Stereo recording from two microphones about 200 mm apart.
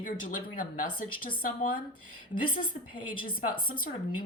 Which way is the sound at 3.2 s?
45° left (ahead or behind).